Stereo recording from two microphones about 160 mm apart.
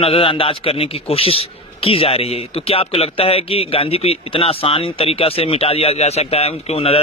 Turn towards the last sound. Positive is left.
turn(degrees=40)  # may be behind; listen again after turning